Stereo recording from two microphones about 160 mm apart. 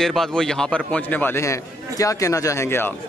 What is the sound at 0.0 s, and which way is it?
A man's voice, centre (ahead or behind).